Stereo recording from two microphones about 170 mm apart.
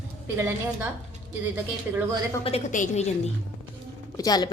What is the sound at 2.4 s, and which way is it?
Speech, 35° left (ahead or behind).